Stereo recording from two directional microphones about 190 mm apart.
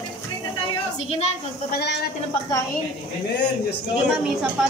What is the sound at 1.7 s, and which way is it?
Speech, 60° left (ahead or behind).